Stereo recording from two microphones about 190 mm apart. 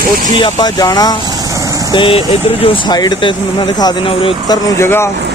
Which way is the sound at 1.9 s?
25° left (ahead or behind).